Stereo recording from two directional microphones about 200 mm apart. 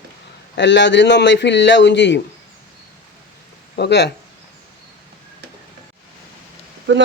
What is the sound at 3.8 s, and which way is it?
Speech, 55° left (ahead or behind).